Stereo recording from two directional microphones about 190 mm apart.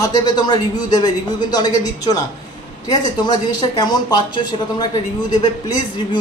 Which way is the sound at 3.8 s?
20° left (ahead or behind).